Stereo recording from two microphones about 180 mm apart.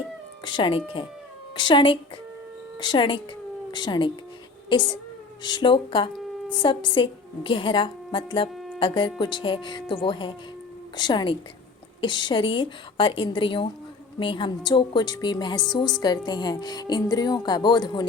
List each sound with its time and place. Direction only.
0.4 s a woman's voice: 25° left (ahead or behind)
8.5 s music: centre (ahead or behind)
8.8 s speech: 25° left (ahead or behind)